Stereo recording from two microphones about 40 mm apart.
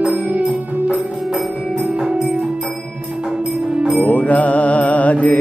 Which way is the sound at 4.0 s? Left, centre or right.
Left.